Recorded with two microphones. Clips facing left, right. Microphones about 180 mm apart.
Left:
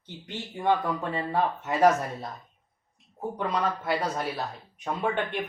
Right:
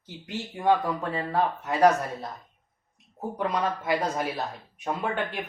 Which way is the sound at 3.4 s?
10° right (ahead or behind).